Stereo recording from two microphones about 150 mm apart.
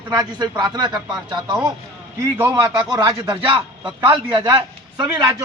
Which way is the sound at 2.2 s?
20° right (ahead or behind).